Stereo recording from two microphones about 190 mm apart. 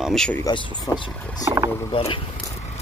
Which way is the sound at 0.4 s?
25° left (ahead or behind).